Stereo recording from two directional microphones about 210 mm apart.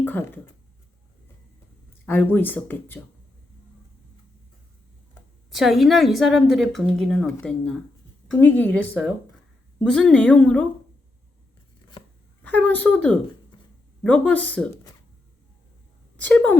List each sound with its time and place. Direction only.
0.0 s speech: 10° left (ahead or behind)
2.0 s speech: 10° left (ahead or behind)
5.5 s a woman's voice: centre (ahead or behind)
12.4 s a woman's voice: 5° left (ahead or behind)
16.1 s a woman's voice: 5° left (ahead or behind)